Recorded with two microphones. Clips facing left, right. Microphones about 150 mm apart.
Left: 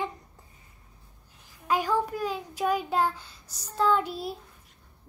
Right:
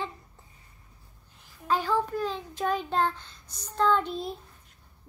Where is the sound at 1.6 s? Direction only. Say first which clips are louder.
Even; 10° left (ahead or behind).